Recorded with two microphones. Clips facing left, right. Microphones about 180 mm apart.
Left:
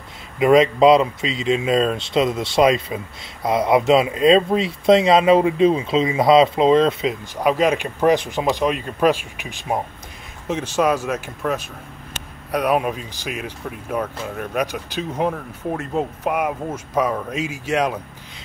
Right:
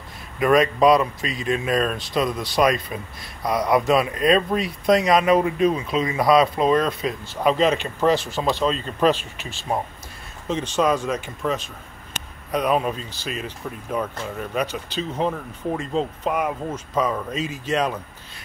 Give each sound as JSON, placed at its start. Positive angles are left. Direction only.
{"t": 0.4, "sound": "speech", "side_deg": 20}
{"t": 7.3, "sound": "speech", "side_deg": 10}